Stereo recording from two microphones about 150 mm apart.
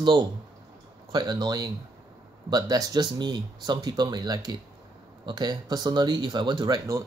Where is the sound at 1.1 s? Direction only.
30° right (ahead or behind).